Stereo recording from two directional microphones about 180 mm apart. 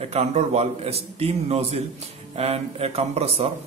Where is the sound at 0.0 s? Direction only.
35° right (ahead or behind).